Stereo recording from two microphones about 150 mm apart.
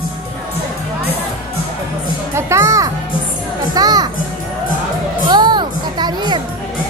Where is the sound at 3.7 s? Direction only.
25° right (ahead or behind).